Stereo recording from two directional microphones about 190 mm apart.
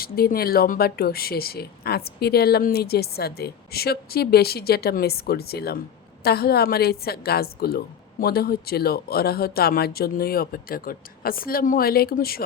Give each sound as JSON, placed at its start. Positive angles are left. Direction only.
{"t": 0.0, "sound": "speech", "side_deg": 50}